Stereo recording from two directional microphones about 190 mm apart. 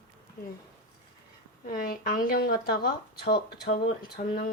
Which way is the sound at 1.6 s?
50° left (ahead or behind).